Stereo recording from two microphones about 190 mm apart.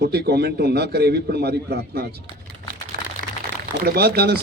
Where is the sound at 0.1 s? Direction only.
60° right (ahead or behind).